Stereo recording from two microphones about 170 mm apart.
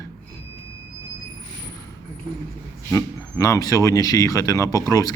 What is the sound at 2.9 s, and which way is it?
Speech, 20° left (ahead or behind).